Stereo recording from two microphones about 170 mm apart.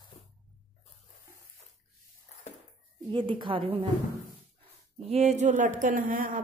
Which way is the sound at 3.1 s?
30° right (ahead or behind).